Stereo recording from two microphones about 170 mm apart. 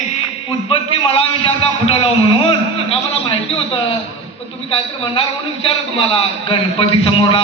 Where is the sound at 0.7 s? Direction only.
35° left (ahead or behind).